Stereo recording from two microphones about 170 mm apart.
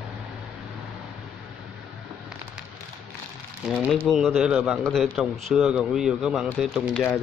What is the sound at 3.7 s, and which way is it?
A man's voice, centre (ahead or behind).